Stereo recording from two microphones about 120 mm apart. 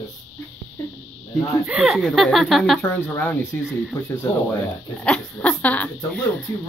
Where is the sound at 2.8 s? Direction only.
15° left (ahead or behind).